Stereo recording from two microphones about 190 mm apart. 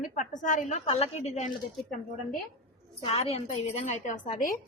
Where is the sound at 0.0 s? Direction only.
40° left (ahead or behind).